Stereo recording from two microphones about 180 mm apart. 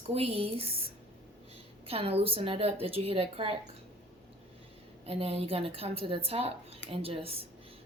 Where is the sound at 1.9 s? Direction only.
35° right (ahead or behind).